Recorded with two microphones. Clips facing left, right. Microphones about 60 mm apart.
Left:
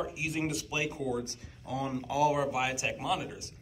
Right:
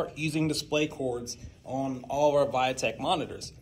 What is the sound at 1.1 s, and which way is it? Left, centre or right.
Speech, left.